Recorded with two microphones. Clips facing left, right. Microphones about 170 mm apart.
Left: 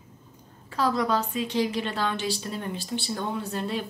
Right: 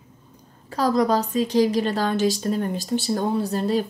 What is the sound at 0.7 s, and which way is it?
A woman's voice, 40° right (ahead or behind).